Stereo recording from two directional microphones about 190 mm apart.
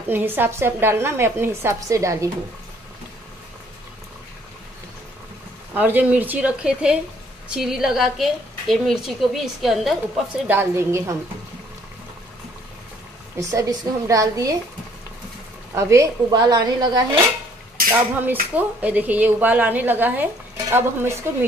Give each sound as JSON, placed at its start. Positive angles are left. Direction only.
{"t": 0.1, "sound": "a woman's voice", "side_deg": -10}
{"t": 5.8, "sound": "a woman's voice", "side_deg": -10}
{"t": 10.5, "sound": "a woman's voice", "side_deg": -10}
{"t": 13.4, "sound": "a woman's voice", "side_deg": -15}
{"t": 15.7, "sound": "speech", "side_deg": -15}
{"t": 18.2, "sound": "a woman's voice", "side_deg": -10}